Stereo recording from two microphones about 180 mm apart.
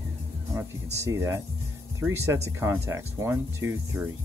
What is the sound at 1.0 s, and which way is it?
Speech, 15° right (ahead or behind).